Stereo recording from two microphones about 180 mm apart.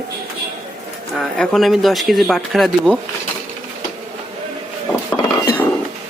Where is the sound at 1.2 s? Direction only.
Centre (ahead or behind).